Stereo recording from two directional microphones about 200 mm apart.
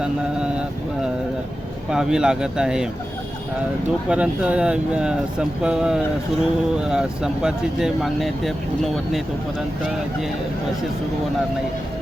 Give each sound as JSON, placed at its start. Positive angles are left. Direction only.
{"t": 1.9, "sound": "speech", "side_deg": -5}
{"t": 4.1, "sound": "speech", "side_deg": -5}